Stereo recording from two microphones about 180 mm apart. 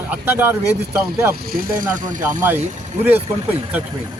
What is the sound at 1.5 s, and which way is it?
Speech, 50° right (ahead or behind).